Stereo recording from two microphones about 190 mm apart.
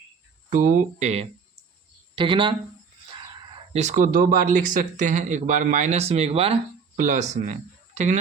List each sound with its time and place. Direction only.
0.5 s speech: 40° right (ahead or behind)
2.1 s speech: 25° right (ahead or behind)
3.7 s speech: 35° right (ahead or behind)